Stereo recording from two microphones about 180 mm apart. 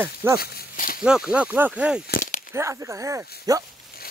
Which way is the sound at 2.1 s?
55° left (ahead or behind).